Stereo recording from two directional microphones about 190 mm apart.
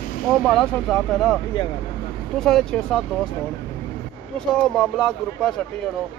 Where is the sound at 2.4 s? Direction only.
5° left (ahead or behind).